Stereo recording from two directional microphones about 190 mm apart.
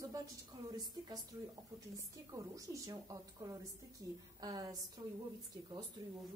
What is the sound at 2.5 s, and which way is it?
A woman's voice, 20° right (ahead or behind).